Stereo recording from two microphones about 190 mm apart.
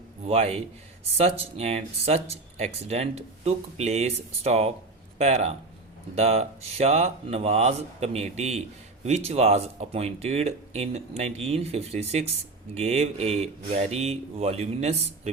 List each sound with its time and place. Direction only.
0.3 s speech: 35° right (ahead or behind)